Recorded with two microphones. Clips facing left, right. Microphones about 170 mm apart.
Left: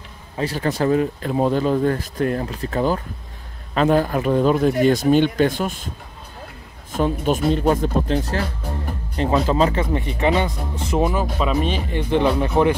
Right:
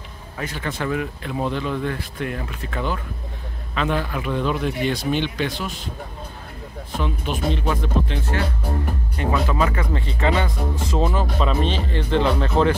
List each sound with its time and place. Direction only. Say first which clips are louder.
0.4 s speech: left 6 dB; 35° left (ahead or behind)
7.0 s speech: left 6 dB; 45° left (ahead or behind); by 12.7 s 15° left (ahead or behind)